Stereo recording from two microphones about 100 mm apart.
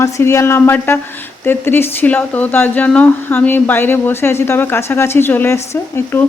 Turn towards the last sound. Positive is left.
turn(degrees=25)  # may be behind; listen again after turning